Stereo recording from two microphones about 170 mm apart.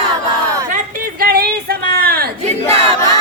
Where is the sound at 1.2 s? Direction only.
65° right (ahead or behind).